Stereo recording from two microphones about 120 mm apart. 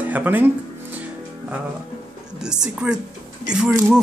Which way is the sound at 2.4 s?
5° right (ahead or behind).